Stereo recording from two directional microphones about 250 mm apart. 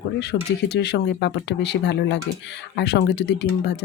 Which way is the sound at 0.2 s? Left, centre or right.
Left.